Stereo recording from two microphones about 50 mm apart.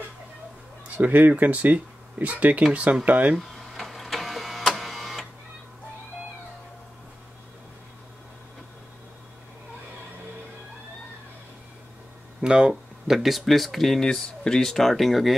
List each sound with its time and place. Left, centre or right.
0.8 s speech: right
3.5 s printer: centre
12.4 s speech: centre